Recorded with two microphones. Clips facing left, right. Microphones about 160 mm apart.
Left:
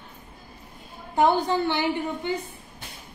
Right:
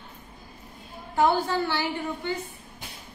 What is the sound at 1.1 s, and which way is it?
A woman's voice, 20° left (ahead or behind).